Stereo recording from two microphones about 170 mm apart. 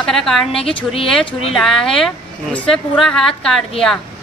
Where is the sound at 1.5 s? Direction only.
5° left (ahead or behind).